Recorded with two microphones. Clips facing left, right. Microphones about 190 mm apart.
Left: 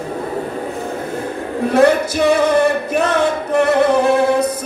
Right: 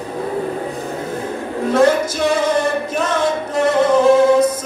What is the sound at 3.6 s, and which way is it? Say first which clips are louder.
Music: left 1 dB; 60° left (ahead or behind).